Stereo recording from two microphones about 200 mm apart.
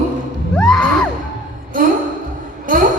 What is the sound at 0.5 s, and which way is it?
Music, 5° left (ahead or behind).